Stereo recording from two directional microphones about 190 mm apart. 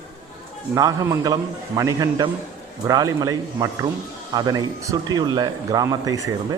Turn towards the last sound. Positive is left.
turn(degrees=-20)  # may be behind; listen again after turning